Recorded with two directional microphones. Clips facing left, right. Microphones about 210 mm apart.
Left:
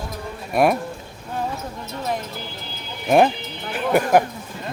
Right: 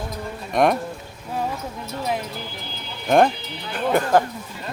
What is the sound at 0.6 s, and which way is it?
Speech, 5° left (ahead or behind).